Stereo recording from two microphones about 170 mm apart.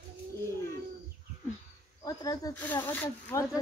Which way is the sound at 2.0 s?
25° left (ahead or behind).